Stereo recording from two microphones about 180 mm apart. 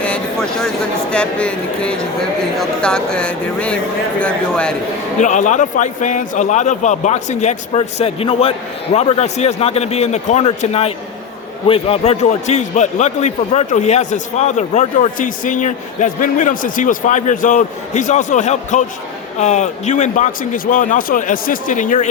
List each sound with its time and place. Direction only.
0.0 s a sound: 5° left (ahead or behind)
1.1 s speech: 5° left (ahead or behind)
5.2 s a man's voice: 45° left (ahead or behind)